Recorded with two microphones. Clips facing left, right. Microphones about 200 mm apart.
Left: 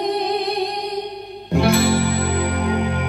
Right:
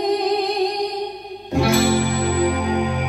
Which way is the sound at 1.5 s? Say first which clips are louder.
Even; 60° left (ahead or behind).